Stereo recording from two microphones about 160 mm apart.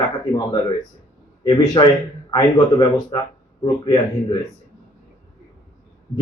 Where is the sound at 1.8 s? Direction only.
30° left (ahead or behind).